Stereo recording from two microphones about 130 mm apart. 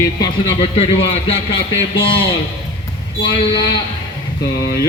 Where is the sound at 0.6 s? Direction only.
50° left (ahead or behind).